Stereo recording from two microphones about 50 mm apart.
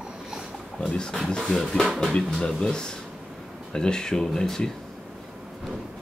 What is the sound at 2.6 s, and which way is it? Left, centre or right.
Speech, centre.